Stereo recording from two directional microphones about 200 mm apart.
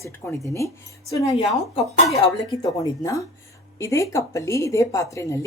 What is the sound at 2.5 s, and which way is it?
A woman's voice, 20° left (ahead or behind).